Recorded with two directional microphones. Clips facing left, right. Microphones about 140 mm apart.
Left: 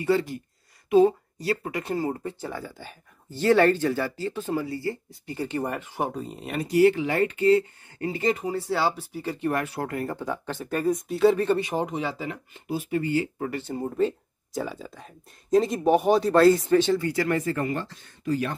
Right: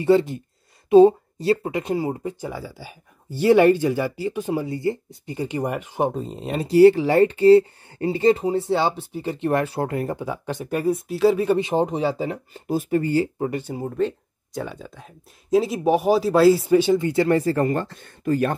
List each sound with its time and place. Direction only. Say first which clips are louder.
0.0 s speech: right 6 dB; 25° right (ahead or behind)
10.2 s speech: right 3 dB; 10° right (ahead or behind)
11.6 s speech: right 6 dB; 30° right (ahead or behind)
13.4 s speech: right 4 dB; 15° right (ahead or behind)
13.8 s speech: even; 5° left (ahead or behind)
17.0 s speech: right 6 dB; 25° right (ahead or behind); by 18.5 s 55° right (ahead or behind)